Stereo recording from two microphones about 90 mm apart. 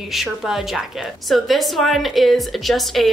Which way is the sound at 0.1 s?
Centre (ahead or behind).